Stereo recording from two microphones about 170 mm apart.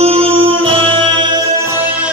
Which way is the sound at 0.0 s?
35° right (ahead or behind).